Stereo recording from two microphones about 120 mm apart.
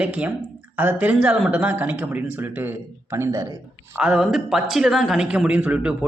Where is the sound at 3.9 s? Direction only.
5° right (ahead or behind).